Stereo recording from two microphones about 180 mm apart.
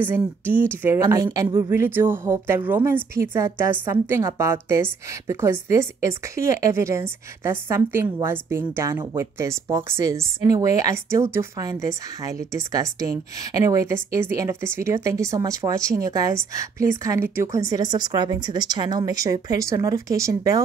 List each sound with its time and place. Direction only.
0.0 s a woman's voice: 10° right (ahead or behind)